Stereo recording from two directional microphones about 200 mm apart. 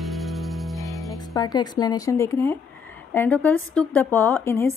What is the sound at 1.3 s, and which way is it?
A woman's voice, 20° left (ahead or behind).